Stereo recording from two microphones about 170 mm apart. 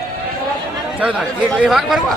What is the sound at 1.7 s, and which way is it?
Music, centre (ahead or behind).